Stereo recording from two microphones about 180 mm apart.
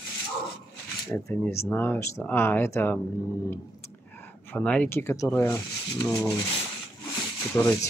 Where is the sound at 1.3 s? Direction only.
15° left (ahead or behind).